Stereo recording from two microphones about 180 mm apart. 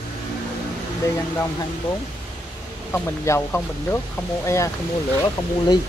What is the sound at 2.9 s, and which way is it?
Speech, 15° left (ahead or behind).